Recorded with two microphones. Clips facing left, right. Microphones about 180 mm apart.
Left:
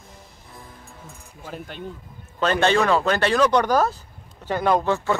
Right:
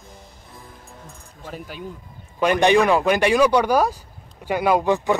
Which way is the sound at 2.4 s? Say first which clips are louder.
Right 3 dB; 15° right (ahead or behind).